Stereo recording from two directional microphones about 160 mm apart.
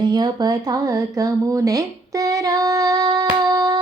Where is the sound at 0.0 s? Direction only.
25° right (ahead or behind).